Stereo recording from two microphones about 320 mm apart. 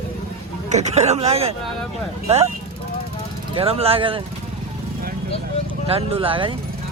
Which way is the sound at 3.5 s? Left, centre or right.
Centre.